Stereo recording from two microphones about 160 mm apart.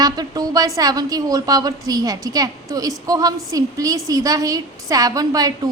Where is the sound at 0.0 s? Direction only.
25° right (ahead or behind).